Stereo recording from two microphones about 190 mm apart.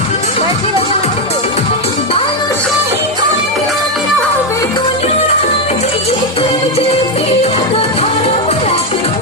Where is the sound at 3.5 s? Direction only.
Centre (ahead or behind); by 4.9 s 20° left (ahead or behind).